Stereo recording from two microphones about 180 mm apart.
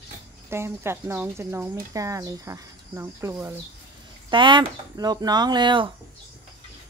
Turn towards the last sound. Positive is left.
turn(degrees=-25)  # may be behind; listen again after turning